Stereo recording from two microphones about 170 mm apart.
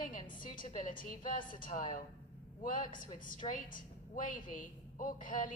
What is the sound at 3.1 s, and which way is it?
A woman's voice, 50° left (ahead or behind).